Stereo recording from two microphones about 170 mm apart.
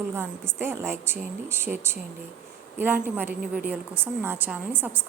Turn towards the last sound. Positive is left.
turn(degrees=-10)  # may be behind; listen again after turning